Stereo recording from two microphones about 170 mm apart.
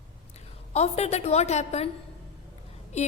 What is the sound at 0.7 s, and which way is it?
A woman's voice, 40° left (ahead or behind).